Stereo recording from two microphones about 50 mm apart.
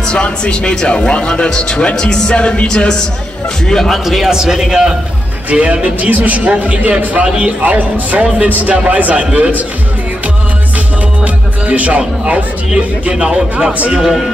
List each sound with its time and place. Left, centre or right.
0.0 s speech: centre
3.6 s a man's voice: centre
5.5 s speech: right
11.2 s music: right
13.1 s a man's voice: centre